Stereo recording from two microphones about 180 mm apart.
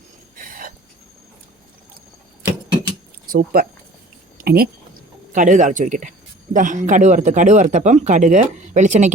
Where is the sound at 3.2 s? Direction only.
55° right (ahead or behind).